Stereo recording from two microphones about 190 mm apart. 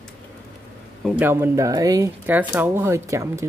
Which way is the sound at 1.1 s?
10° right (ahead or behind).